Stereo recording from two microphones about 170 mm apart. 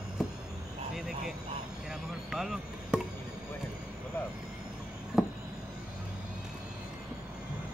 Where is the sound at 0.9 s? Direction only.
Centre (ahead or behind).